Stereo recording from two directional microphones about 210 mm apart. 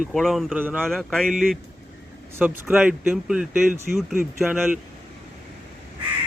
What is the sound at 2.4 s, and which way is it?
Speech, 5° right (ahead or behind).